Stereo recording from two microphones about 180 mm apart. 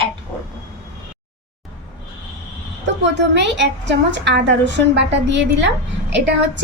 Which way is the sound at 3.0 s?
75° right (ahead or behind).